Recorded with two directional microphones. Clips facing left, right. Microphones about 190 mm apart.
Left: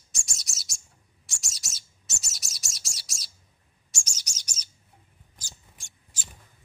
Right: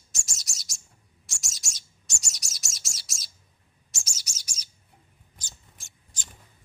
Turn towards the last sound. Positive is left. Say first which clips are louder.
# left 1 dB
turn(degrees=5)  # may be behind; listen again after turning